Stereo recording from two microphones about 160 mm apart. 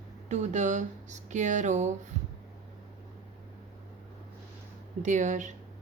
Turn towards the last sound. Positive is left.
turn(degrees=-50)  # may be behind; listen again after turning